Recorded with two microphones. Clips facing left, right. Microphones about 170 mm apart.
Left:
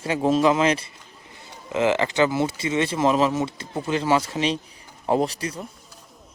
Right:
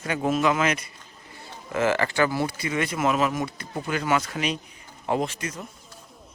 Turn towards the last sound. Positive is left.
turn(degrees=35)  # may be behind; listen again after turning